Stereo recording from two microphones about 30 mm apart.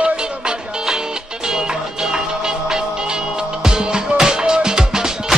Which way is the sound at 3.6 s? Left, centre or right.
Right.